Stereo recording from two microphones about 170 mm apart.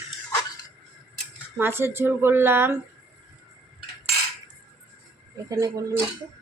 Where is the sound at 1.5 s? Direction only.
15° right (ahead or behind).